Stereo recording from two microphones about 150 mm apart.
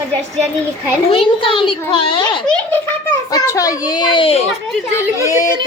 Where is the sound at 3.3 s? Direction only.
20° left (ahead or behind).